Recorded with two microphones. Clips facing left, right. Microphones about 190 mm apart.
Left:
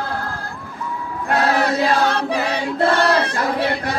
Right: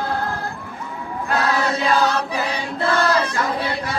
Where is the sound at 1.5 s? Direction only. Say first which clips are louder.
Left 2 dB; 60° left (ahead or behind).